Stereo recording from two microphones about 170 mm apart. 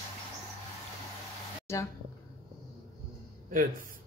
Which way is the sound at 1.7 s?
15° left (ahead or behind).